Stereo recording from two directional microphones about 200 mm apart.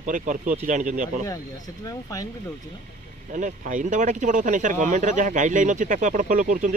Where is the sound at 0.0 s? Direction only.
40° right (ahead or behind).